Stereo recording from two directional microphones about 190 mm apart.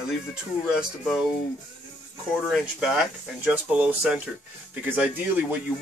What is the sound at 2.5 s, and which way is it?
Speech, centre (ahead or behind).